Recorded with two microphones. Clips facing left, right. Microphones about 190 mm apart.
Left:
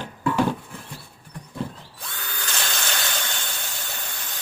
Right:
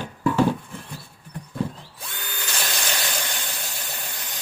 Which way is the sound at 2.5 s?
15° right (ahead or behind).